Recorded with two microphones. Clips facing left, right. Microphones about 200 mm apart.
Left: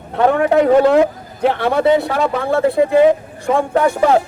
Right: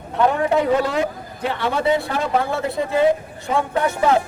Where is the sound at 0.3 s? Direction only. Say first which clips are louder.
Left 7 dB; 65° left (ahead or behind); by 3.7 s 50° left (ahead or behind).